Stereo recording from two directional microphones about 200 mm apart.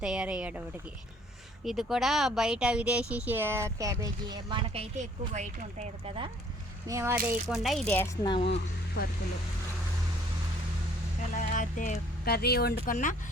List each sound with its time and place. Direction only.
0.0 s speech: 5° right (ahead or behind)
1.6 s speech: centre (ahead or behind); by 6.3 s 30° right (ahead or behind)
6.8 s speech: 15° right (ahead or behind)
7.4 s speech: centre (ahead or behind)
8.2 s speech: 25° left (ahead or behind)
9.0 s speech: 50° left (ahead or behind)
11.5 s speech: 40° left (ahead or behind)